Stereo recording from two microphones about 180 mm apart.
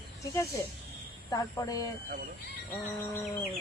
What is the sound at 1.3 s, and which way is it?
Speech, 20° left (ahead or behind).